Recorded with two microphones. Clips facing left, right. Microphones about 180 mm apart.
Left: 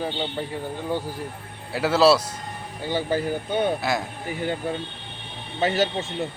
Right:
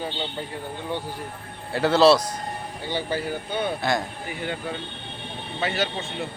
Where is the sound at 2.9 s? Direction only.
45° left (ahead or behind).